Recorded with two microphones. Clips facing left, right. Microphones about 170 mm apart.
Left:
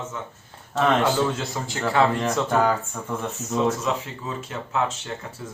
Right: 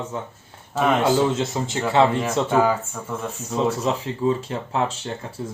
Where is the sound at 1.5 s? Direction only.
20° right (ahead or behind).